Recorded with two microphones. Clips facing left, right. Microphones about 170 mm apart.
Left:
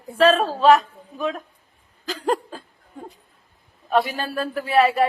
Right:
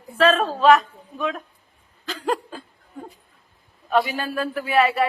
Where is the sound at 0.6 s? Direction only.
35° left (ahead or behind).